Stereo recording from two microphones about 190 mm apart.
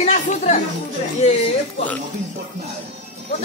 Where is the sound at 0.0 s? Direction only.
35° left (ahead or behind).